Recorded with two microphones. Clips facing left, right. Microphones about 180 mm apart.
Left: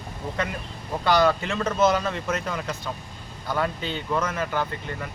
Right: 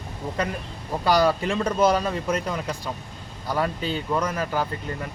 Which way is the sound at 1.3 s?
10° right (ahead or behind).